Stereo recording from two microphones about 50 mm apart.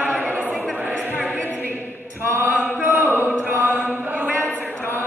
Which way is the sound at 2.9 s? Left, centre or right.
Right.